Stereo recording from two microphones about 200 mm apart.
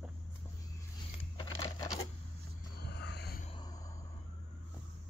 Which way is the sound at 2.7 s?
55° left (ahead or behind).